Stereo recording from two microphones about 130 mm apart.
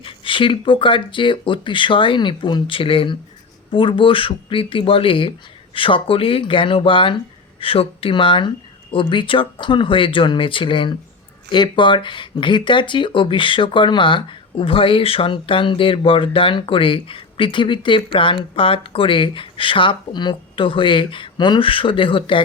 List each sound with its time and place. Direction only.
0.0 s speech: 40° left (ahead or behind)